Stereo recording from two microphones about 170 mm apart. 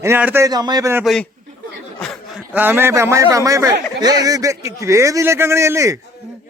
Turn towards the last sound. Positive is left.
turn(degrees=-15)  # may be behind; listen again after turning